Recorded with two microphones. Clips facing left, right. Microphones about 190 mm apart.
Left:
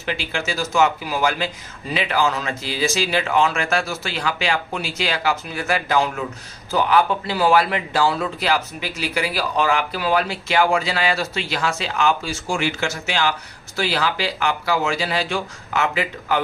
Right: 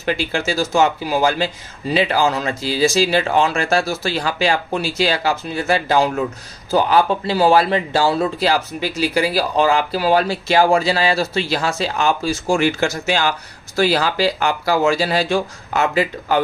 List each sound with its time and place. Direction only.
0.0 s speech: 40° right (ahead or behind)